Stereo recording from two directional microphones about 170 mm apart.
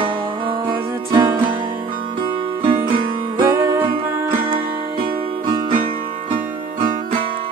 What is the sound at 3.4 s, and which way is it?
Music, 20° right (ahead or behind).